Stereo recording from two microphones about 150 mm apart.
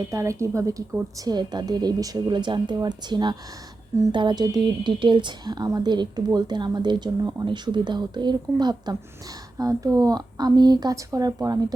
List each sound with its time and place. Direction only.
0.1 s speech: 20° right (ahead or behind)